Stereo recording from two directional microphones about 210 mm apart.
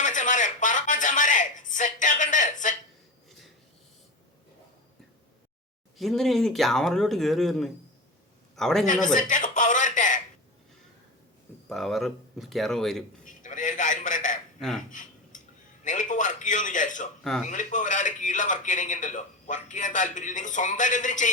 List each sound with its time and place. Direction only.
0.0 s a sound: 35° left (ahead or behind)
6.0 s speech: centre (ahead or behind)
9.1 s a sound: 40° left (ahead or behind)
11.7 s speech: centre (ahead or behind)
13.2 s telephone: 40° left (ahead or behind)
14.6 s speech: centre (ahead or behind)
14.8 s cutlery: 40° left (ahead or behind)
15.8 s a sound: 35° left (ahead or behind)
17.4 s a man's voice: 35° left (ahead or behind)